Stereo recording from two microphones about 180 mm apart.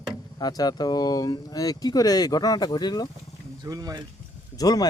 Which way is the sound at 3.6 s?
20° right (ahead or behind).